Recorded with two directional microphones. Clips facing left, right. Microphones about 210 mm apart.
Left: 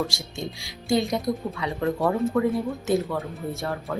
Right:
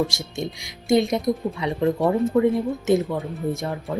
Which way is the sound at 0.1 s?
20° right (ahead or behind).